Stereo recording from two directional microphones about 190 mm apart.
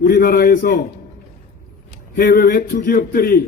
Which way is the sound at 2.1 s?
50° left (ahead or behind).